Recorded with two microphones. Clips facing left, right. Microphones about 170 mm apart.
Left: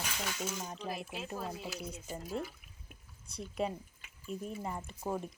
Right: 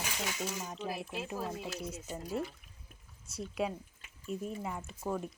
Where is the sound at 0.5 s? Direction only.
5° right (ahead or behind).